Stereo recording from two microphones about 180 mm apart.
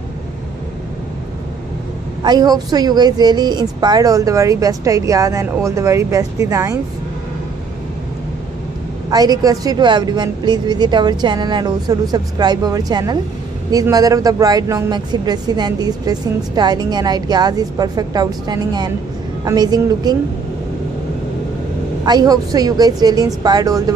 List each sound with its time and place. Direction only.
2.2 s a woman's voice: 20° right (ahead or behind)
9.1 s a woman's voice: 20° right (ahead or behind)
22.0 s a woman's voice: 20° right (ahead or behind)